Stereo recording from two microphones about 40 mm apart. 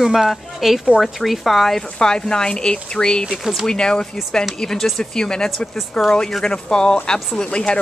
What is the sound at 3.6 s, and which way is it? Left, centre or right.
Speech, centre.